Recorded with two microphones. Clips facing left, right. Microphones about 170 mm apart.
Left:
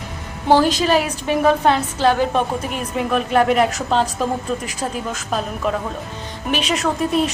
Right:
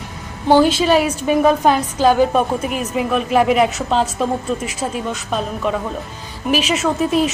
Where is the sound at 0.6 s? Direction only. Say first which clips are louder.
Right 3 dB; 40° left (ahead or behind).